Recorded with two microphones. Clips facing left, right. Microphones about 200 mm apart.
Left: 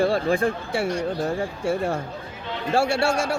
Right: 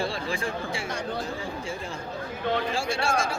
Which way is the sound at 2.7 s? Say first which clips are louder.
Left 6 dB; 65° left (ahead or behind).